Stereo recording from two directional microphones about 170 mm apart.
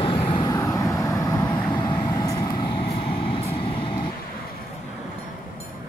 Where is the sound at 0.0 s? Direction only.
30° left (ahead or behind).